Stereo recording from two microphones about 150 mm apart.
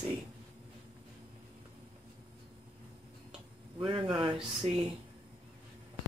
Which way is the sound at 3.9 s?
30° right (ahead or behind).